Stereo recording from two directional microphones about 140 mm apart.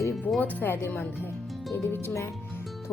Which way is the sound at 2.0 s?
15° left (ahead or behind).